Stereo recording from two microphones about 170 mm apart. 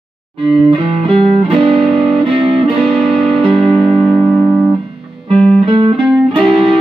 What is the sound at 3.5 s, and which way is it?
Music, centre (ahead or behind).